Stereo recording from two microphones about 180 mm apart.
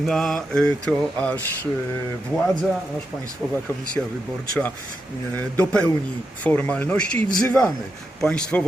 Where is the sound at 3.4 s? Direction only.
Centre (ahead or behind).